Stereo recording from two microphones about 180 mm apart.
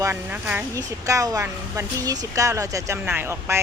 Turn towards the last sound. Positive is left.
turn(degrees=-15)  # may be behind; listen again after turning